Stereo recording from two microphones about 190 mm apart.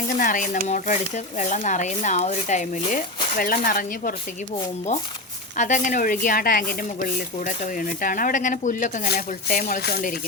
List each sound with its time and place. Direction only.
0.2 s speech: 45° left (ahead or behind)
5.5 s speech: 40° left (ahead or behind)